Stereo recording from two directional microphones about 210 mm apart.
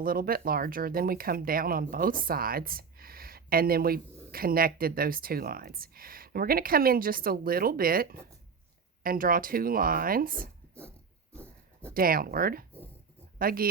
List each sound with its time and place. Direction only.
0.0 s speech: 45° right (ahead or behind)
11.3 s a sound: 10° right (ahead or behind)
11.9 s speech: 45° right (ahead or behind)